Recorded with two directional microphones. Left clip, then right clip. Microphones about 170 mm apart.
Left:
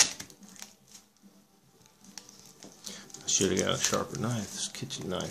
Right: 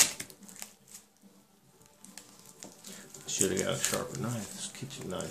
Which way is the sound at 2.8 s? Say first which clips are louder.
Left 9 dB; 45° left (ahead or behind).